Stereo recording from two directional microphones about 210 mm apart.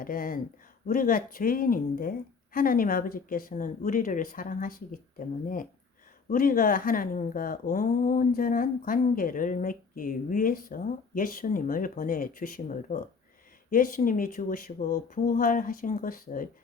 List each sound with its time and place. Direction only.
0.0 s speech: 40° left (ahead or behind)